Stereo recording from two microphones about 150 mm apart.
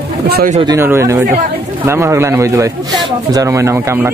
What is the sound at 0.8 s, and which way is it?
Speech, 15° right (ahead or behind).